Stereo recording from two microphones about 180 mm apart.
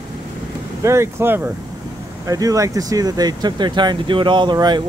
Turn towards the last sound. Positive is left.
turn(degrees=-25)  # may be behind; listen again after turning